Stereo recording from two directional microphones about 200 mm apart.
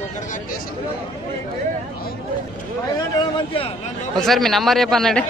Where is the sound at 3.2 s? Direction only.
25° left (ahead or behind).